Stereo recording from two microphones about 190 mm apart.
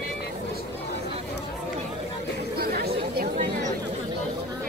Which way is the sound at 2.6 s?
55° right (ahead or behind).